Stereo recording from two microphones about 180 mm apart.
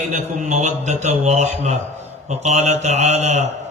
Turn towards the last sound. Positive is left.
turn(degrees=-35)  # may be behind; listen again after turning